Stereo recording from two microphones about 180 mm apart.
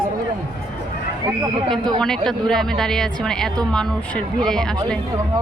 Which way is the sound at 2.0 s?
5° left (ahead or behind).